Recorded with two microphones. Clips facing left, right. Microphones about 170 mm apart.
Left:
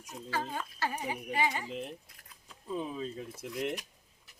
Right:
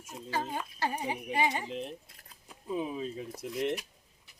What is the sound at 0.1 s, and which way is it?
Speech, 15° right (ahead or behind).